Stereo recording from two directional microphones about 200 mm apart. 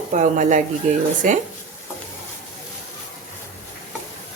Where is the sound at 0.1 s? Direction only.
40° right (ahead or behind).